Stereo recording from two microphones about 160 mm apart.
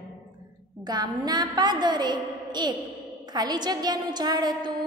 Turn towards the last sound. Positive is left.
turn(degrees=-25)  # may be behind; listen again after turning